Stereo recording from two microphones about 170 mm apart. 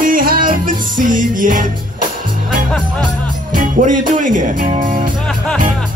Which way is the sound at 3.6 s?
50° right (ahead or behind).